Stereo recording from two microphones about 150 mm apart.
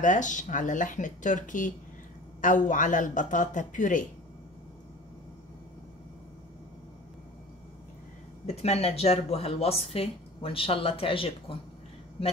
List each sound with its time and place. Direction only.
0.0 s speech: 55° left (ahead or behind)
8.5 s speech: 45° left (ahead or behind)